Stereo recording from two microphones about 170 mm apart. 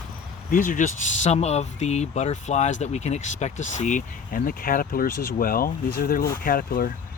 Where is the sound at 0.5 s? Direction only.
50° left (ahead or behind).